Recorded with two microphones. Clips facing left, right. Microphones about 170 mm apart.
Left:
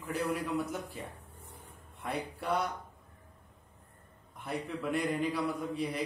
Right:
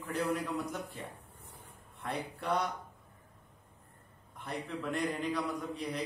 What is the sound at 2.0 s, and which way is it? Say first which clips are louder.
Speech: left 1 dB; 5° left (ahead or behind).